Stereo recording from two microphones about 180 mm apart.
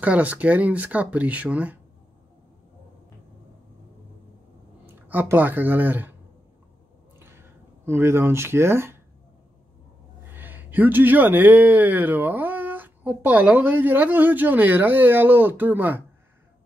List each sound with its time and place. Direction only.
0.0 s speech: 10° right (ahead or behind)
5.0 s speech: 10° right (ahead or behind)
7.8 s speech: 15° right (ahead or behind)
10.3 s speech: 10° right (ahead or behind)